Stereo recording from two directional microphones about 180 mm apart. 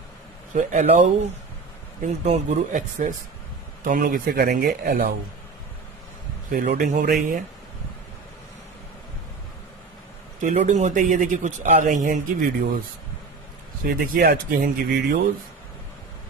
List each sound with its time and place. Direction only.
0.6 s speech: 45° right (ahead or behind)
6.5 s speech: 55° right (ahead or behind)
6.9 s speech: 45° right (ahead or behind)
10.4 s speech: 40° right (ahead or behind)
13.8 s speech: 55° right (ahead or behind)